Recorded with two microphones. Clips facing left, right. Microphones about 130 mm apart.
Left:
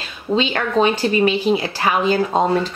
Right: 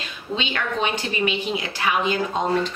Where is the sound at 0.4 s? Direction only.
40° left (ahead or behind).